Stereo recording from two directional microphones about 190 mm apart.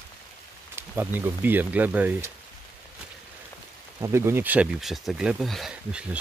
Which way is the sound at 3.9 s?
15° right (ahead or behind).